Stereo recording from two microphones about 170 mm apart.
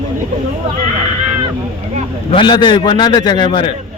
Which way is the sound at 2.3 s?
30° left (ahead or behind).